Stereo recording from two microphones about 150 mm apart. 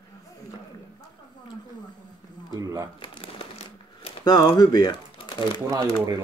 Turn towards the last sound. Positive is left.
turn(degrees=-25)  # may be behind; listen again after turning